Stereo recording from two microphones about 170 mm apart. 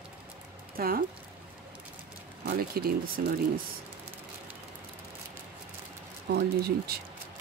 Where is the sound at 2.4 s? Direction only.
60° right (ahead or behind).